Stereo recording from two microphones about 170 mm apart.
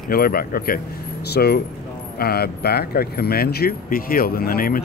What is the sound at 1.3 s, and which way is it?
A man's voice, 70° left (ahead or behind).